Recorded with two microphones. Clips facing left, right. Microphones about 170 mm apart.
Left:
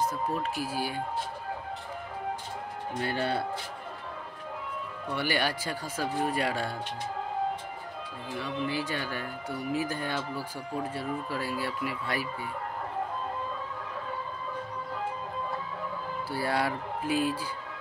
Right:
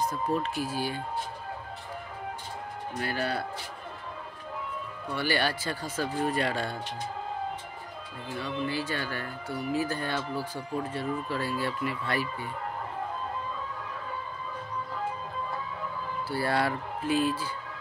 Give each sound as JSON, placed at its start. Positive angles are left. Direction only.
{"t": 0.0, "sound": "speech", "side_deg": 5}
{"t": 3.0, "sound": "speech", "side_deg": 25}
{"t": 5.1, "sound": "speech", "side_deg": 15}
{"t": 8.6, "sound": "speech", "side_deg": 15}
{"t": 16.3, "sound": "speech", "side_deg": 10}